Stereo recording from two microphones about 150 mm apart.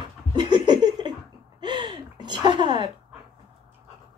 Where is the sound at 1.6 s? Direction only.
30° right (ahead or behind).